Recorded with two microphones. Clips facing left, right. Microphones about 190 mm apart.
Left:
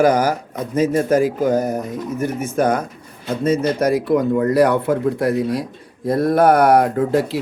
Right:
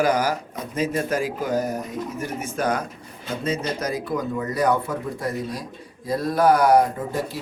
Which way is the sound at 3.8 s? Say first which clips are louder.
Left 10 dB; 70° left (ahead or behind).